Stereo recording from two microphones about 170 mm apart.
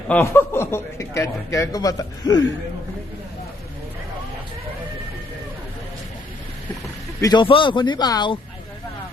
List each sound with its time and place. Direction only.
0.1 s a man's voice: 15° left (ahead or behind)
7.2 s a man's voice: 25° left (ahead or behind)